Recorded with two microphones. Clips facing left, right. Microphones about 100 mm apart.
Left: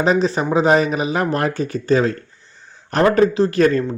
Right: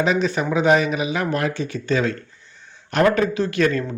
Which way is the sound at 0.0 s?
35° left (ahead or behind).